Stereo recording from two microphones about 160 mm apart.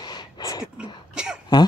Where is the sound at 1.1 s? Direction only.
5° right (ahead or behind).